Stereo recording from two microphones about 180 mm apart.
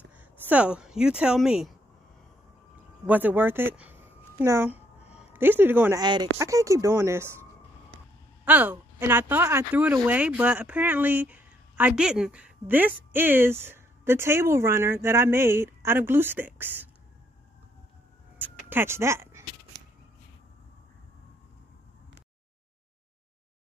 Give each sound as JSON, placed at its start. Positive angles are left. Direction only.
{"t": 0.1, "sound": "speech", "side_deg": -10}
{"t": 3.1, "sound": "a woman's voice", "side_deg": -10}
{"t": 8.5, "sound": "a woman's voice", "side_deg": -10}
{"t": 18.4, "sound": "a sound", "side_deg": -10}